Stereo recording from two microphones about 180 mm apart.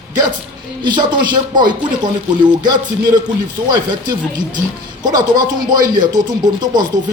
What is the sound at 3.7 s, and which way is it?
Speech, 25° right (ahead or behind).